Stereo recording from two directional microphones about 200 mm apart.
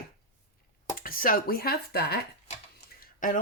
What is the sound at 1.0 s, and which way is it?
Speech, 45° left (ahead or behind).